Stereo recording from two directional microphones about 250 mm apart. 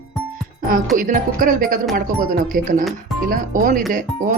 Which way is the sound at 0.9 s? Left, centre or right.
Right.